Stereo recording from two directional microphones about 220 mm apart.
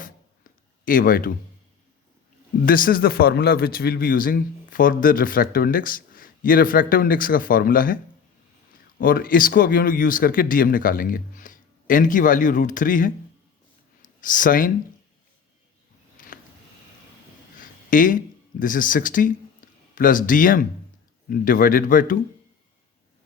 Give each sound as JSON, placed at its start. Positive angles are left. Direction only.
{"t": 0.9, "sound": "a man's voice", "side_deg": 40}
{"t": 2.6, "sound": "a man's voice", "side_deg": 40}
{"t": 9.0, "sound": "a man's voice", "side_deg": 40}
{"t": 16.1, "sound": "a sound", "side_deg": 40}
{"t": 17.6, "sound": "a sound", "side_deg": 40}
{"t": 18.6, "sound": "a man's voice", "side_deg": 40}